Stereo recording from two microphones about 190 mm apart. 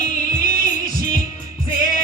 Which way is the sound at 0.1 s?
50° right (ahead or behind).